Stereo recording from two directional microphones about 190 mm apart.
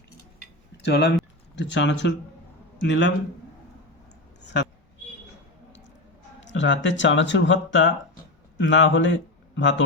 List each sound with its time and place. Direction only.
0.8 s a man's voice: 65° left (ahead or behind)
4.4 s a sound: 65° left (ahead or behind)
6.4 s speech: 75° left (ahead or behind)